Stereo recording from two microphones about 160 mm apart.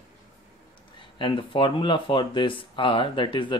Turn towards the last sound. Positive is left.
turn(degrees=30)  # may be behind; listen again after turning